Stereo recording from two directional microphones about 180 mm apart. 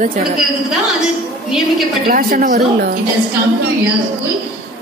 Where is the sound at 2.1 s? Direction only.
50° right (ahead or behind).